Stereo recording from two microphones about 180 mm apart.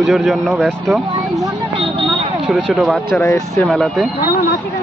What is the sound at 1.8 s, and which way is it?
Speech, 25° right (ahead or behind).